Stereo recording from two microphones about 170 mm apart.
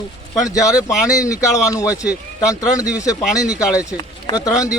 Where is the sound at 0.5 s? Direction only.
20° left (ahead or behind).